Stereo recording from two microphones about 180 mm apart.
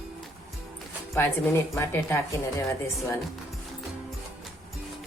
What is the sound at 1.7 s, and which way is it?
Speech, 10° left (ahead or behind).